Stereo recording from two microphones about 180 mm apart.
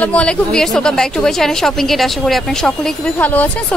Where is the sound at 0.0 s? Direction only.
5° left (ahead or behind).